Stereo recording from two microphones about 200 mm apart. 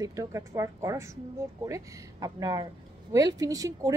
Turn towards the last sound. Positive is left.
turn(degrees=-15)  # may be behind; listen again after turning